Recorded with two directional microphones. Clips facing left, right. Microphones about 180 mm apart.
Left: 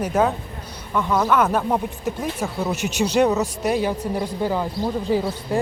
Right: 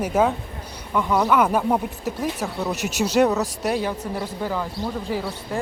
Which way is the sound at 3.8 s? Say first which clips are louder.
Left 3 dB; 15° left (ahead or behind).